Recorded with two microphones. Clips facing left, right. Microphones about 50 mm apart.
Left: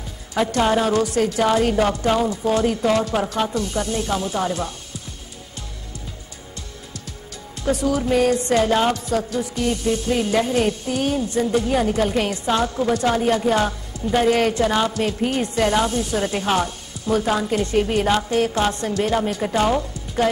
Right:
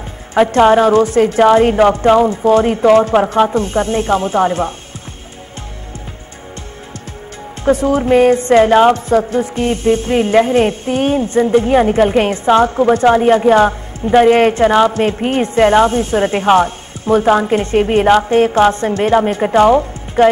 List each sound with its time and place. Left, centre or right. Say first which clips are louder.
0.3 s a woman's voice: right 10 dB; right
7.6 s a woman's voice: right 8 dB; right